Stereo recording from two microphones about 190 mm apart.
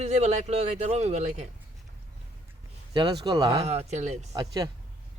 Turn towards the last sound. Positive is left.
turn(degrees=-20)  # may be behind; listen again after turning